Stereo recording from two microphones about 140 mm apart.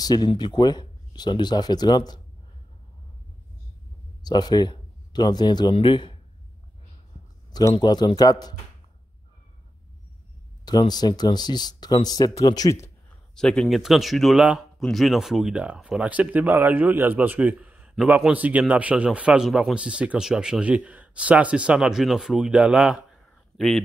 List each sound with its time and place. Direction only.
0.0 s speech: 30° left (ahead or behind)
4.2 s speech: 30° left (ahead or behind)
7.7 s speech: 30° left (ahead or behind)
10.6 s speech: 30° left (ahead or behind)
13.3 s speech: 5° left (ahead or behind)